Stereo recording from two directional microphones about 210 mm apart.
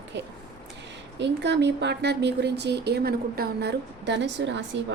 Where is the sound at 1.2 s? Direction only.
55° right (ahead or behind).